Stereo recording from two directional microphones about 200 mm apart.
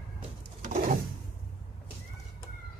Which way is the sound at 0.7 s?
40° right (ahead or behind).